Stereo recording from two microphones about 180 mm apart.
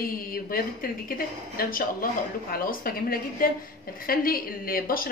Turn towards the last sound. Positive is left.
turn(degrees=55)  # may be behind; listen again after turning